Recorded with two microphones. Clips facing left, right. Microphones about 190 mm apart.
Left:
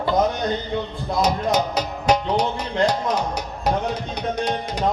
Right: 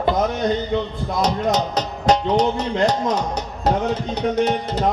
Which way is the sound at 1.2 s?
10° left (ahead or behind).